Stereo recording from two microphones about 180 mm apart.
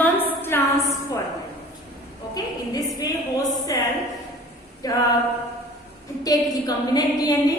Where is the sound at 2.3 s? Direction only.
20° left (ahead or behind).